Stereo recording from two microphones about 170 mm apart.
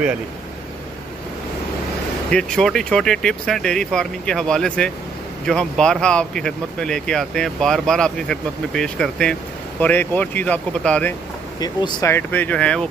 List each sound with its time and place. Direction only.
2.3 s speech: 5° left (ahead or behind)
11.6 s speech: 25° left (ahead or behind)
12.1 s speech: 10° left (ahead or behind)